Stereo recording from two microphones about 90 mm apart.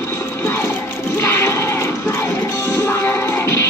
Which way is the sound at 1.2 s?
30° left (ahead or behind).